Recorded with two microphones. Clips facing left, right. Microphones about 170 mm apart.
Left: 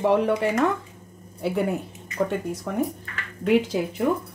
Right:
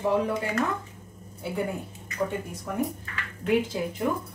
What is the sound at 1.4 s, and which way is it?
Speech, 85° left.